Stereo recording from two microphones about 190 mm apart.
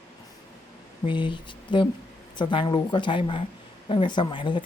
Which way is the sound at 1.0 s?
25° left (ahead or behind).